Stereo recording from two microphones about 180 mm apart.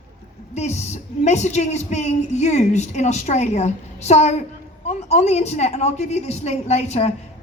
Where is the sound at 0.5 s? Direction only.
40° left (ahead or behind).